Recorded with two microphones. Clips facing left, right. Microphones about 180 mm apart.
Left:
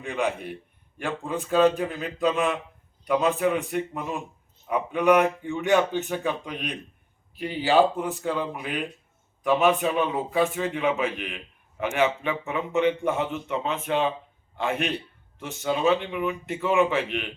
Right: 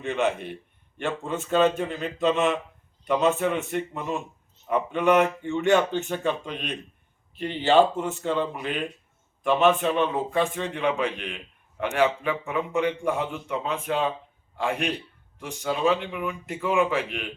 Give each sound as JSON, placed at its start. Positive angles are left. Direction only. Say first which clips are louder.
{"t": 0.0, "sound": "a man's voice", "louder": "right 2 dB", "side_deg": 0}
{"t": 8.3, "sound": "a man's voice", "louder": "right 4 dB", "side_deg": 5}